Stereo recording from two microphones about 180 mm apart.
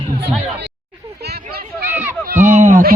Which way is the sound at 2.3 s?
40° right (ahead or behind).